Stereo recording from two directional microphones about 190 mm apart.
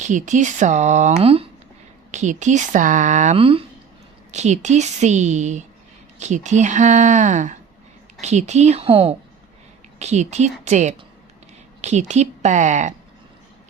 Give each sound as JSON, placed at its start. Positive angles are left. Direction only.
{"t": 0.0, "sound": "speech", "side_deg": -40}